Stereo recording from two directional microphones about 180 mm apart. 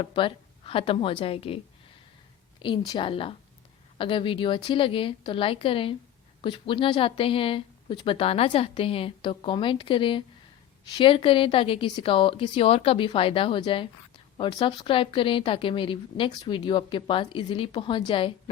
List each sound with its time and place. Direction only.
0.0 s speech: 30° left (ahead or behind)
2.6 s speech: 25° left (ahead or behind)